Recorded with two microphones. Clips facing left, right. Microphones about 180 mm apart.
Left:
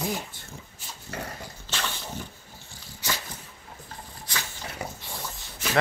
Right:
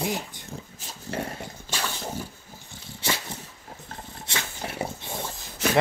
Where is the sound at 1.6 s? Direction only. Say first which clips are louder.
Right 1 dB; 10° right (ahead or behind).